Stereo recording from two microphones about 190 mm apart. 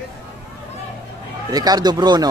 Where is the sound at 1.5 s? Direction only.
20° right (ahead or behind).